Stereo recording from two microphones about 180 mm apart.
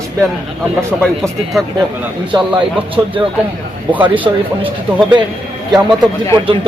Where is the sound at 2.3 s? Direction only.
30° right (ahead or behind).